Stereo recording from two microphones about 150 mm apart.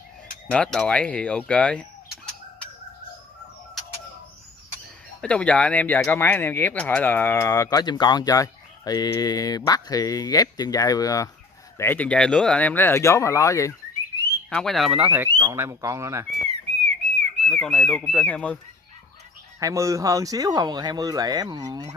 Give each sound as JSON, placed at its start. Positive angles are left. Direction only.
{"t": 0.5, "sound": "speech", "side_deg": 5}
{"t": 5.2, "sound": "speech", "side_deg": 10}
{"t": 11.8, "sound": "speech", "side_deg": 10}
{"t": 14.5, "sound": "speech", "side_deg": 5}
{"t": 15.2, "sound": "speech", "side_deg": -30}
{"t": 15.5, "sound": "speech", "side_deg": -15}
{"t": 16.4, "sound": "whistle", "side_deg": -50}
{"t": 17.5, "sound": "speech", "side_deg": 5}
{"t": 19.6, "sound": "speech", "side_deg": -20}